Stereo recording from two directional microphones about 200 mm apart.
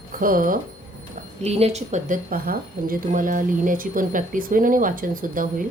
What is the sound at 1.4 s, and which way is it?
Speech, 30° right (ahead or behind).